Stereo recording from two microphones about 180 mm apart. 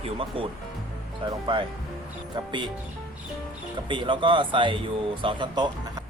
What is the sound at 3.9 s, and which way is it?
Speech, 25° right (ahead or behind).